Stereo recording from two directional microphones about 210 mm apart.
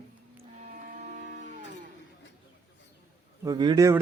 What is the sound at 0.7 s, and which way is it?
Printer, 40° right (ahead or behind).